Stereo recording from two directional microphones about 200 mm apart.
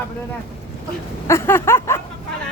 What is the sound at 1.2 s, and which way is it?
Speech, 10° left (ahead or behind).